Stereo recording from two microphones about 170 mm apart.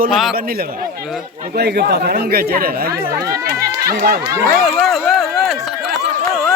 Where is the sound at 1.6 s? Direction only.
70° right (ahead or behind).